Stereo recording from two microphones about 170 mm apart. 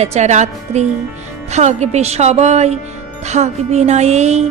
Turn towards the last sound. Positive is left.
turn(degrees=-40)  # may be behind; listen again after turning